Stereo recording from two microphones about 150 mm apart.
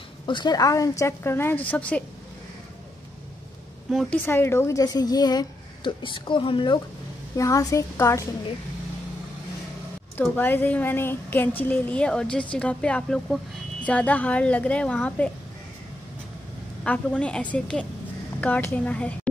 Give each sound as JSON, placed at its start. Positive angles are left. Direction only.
{"t": 0.3, "sound": "a woman's voice", "side_deg": 30}
{"t": 3.9, "sound": "speech", "side_deg": 0}
{"t": 4.3, "sound": "a woman's voice", "side_deg": 15}
{"t": 7.3, "sound": "a woman's voice", "side_deg": 20}
{"t": 10.3, "sound": "a woman's voice", "side_deg": 10}
{"t": 16.8, "sound": "a woman's voice", "side_deg": 10}